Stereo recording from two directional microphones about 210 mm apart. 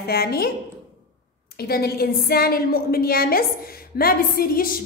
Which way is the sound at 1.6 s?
50° left (ahead or behind).